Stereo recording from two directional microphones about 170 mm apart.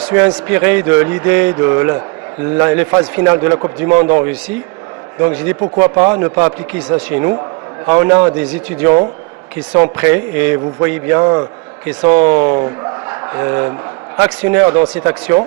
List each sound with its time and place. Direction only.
0.0 s a man's voice: 10° right (ahead or behind)
11.2 s a man's voice: 25° right (ahead or behind)
11.9 s a man's voice: 10° right (ahead or behind)